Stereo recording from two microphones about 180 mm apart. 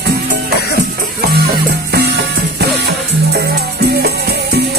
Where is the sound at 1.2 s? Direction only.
60° right (ahead or behind).